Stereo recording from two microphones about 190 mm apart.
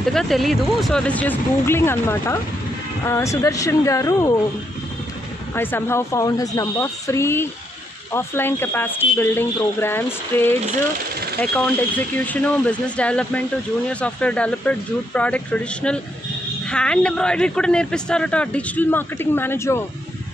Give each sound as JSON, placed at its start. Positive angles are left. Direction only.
{"t": 0.0, "sound": "speech", "side_deg": 0}
{"t": 5.5, "sound": "speech", "side_deg": 10}